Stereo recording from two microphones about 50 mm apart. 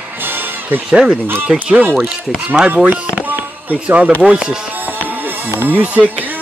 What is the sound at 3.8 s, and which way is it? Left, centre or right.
Speech, right.